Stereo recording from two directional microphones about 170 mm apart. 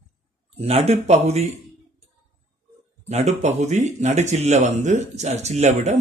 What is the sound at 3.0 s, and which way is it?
Speech, 40° right (ahead or behind).